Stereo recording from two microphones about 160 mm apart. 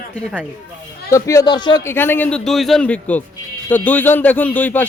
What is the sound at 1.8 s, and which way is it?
A man's voice, 15° left (ahead or behind).